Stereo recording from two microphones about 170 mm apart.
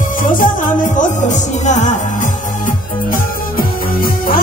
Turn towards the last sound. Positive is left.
turn(degrees=55)  # may be behind; listen again after turning